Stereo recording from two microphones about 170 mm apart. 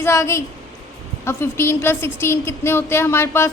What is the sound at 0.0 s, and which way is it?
A woman's voice, 15° left (ahead or behind).